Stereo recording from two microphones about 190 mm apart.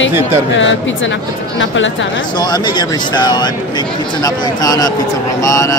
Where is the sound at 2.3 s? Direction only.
20° left (ahead or behind).